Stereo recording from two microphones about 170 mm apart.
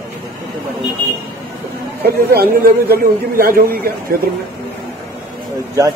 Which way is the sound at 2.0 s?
65° right (ahead or behind).